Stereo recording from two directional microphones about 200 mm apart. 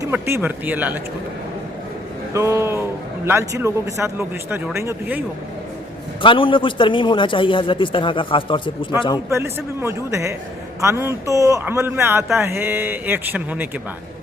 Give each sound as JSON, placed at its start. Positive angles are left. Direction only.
{"t": 0.0, "sound": "a man's voice", "side_deg": -10}
{"t": 2.3, "sound": "a man's voice", "side_deg": -15}
{"t": 6.2, "sound": "a man's voice", "side_deg": 25}
{"t": 9.3, "sound": "a man's voice", "side_deg": -10}